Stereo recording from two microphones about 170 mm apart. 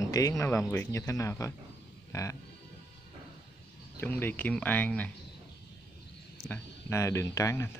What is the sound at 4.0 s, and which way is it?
Speech, 10° left (ahead or behind).